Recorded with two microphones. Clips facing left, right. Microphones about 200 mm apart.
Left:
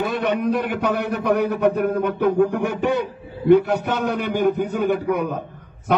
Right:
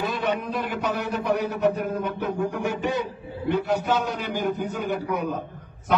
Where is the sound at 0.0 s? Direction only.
65° left (ahead or behind).